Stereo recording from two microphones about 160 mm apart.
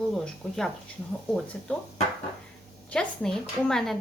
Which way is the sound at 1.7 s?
10° left (ahead or behind).